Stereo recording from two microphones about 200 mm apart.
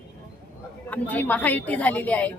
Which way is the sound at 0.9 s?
10° left (ahead or behind).